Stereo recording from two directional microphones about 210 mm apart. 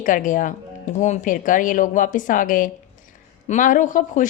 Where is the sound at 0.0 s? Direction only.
40° left (ahead or behind).